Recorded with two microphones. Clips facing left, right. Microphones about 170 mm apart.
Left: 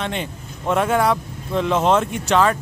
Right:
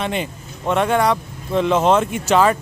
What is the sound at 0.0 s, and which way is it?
Speech, 5° right (ahead or behind).